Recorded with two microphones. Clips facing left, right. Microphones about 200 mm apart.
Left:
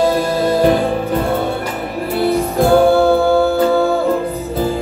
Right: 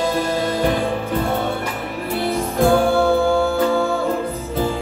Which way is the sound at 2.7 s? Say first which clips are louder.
Left 6 dB; 35° left (ahead or behind).